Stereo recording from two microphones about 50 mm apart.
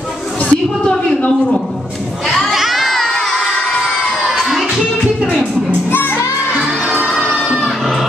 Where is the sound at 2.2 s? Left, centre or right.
Centre.